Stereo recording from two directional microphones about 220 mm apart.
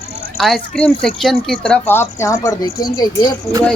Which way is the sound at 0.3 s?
Centre (ahead or behind).